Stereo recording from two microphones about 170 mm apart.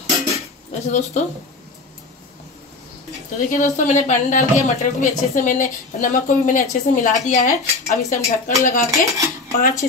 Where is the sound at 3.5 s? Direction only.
50° left (ahead or behind).